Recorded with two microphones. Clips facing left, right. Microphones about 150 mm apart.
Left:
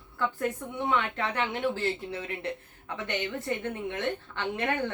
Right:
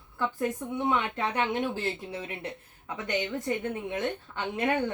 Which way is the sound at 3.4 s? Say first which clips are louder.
Right 1 dB; 15° right (ahead or behind).